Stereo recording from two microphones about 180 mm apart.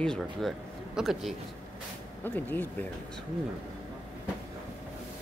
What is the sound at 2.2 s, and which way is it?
Speech, 10° left (ahead or behind).